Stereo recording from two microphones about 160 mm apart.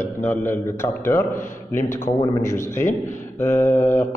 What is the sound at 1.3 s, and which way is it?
Speech, 55° left (ahead or behind).